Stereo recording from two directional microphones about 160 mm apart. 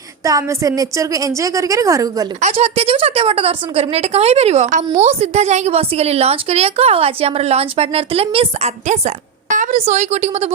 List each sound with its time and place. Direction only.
0.3 s a woman's voice: 20° right (ahead or behind)
2.4 s a woman's voice: 45° right (ahead or behind)